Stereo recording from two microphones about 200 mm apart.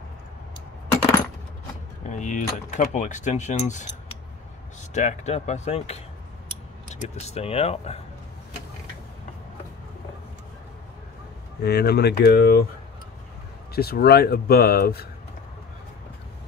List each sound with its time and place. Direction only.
2.0 s speech: 40° left (ahead or behind)
4.9 s speech: 35° left (ahead or behind)
11.6 s speech: 55° left (ahead or behind)
13.7 s speech: 50° left (ahead or behind)